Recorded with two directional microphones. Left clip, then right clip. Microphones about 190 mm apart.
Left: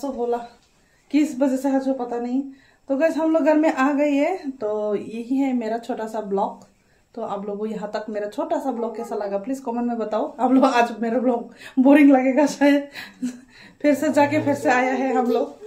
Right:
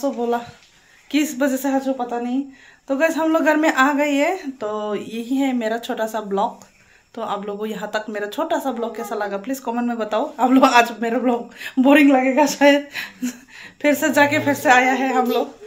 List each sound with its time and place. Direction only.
1.1 s speech: 5° right (ahead or behind)
13.6 s speech: centre (ahead or behind)